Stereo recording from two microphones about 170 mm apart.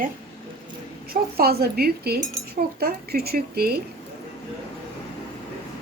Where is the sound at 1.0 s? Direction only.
65° right (ahead or behind).